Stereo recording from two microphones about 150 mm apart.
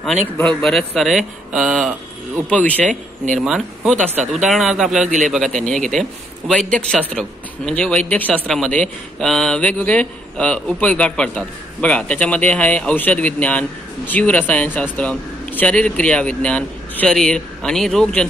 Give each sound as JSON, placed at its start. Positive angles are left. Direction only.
{"t": 0.0, "sound": "a man's voice", "side_deg": 5}
{"t": 3.3, "sound": "a man's voice", "side_deg": 0}
{"t": 5.0, "sound": "a man's voice", "side_deg": -55}
{"t": 5.7, "sound": "a man's voice", "side_deg": 5}